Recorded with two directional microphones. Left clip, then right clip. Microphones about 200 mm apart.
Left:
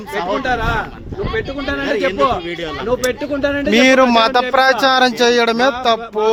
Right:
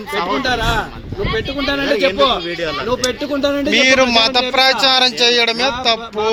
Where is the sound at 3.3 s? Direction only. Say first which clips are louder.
Right 3 dB; 40° right (ahead or behind).